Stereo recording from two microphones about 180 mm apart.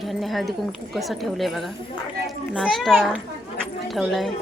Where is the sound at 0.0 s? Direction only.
Centre (ahead or behind).